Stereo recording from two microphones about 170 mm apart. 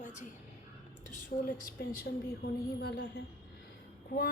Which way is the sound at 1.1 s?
60° left (ahead or behind).